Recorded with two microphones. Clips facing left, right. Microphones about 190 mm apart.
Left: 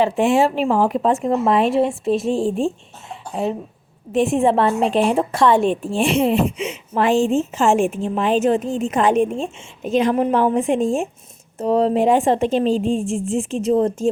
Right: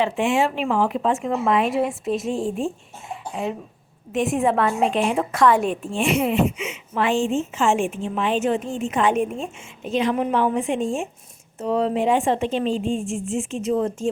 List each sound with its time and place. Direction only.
0.0 s a woman's voice: 35° left (ahead or behind)
4.1 s a woman's voice: 30° left (ahead or behind)
9.8 s a woman's voice: 45° left (ahead or behind)